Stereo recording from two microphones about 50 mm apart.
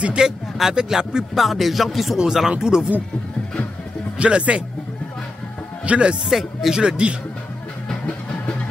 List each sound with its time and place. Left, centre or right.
0.2 s speech: centre
4.2 s speech: right
5.9 s speech: right
6.2 s speech: centre
6.8 s speech: centre